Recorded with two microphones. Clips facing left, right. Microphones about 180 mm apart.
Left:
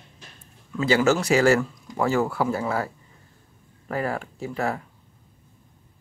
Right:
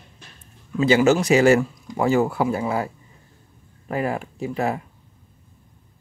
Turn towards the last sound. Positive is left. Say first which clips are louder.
# right 3 dB
turn(degrees=-15)  # may be behind; listen again after turning